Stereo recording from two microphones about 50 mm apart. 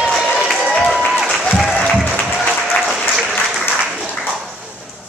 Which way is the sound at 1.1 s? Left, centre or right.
Centre.